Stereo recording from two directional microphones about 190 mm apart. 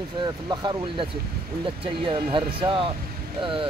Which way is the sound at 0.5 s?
20° right (ahead or behind).